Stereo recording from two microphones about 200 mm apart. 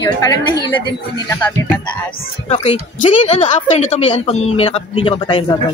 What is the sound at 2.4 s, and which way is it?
A woman's voice, 30° left (ahead or behind).